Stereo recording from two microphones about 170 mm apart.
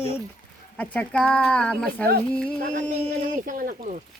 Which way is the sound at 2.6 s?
50° right (ahead or behind).